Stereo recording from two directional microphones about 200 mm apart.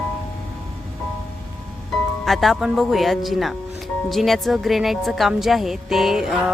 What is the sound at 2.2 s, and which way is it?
A woman's voice, centre (ahead or behind).